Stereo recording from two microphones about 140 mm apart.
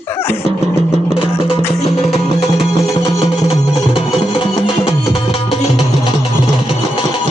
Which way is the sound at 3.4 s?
40° left (ahead or behind).